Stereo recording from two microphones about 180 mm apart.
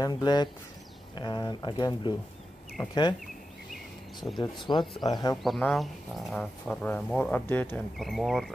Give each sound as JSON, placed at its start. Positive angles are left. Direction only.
{"t": 0.0, "sound": "speech", "side_deg": 25}
{"t": 4.4, "sound": "speech", "side_deg": 25}
{"t": 5.4, "sound": "speech", "side_deg": 0}